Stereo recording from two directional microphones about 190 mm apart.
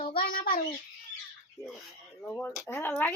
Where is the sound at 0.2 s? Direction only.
50° left (ahead or behind).